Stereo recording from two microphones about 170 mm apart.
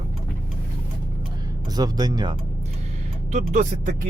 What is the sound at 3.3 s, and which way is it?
Speech, 45° right (ahead or behind).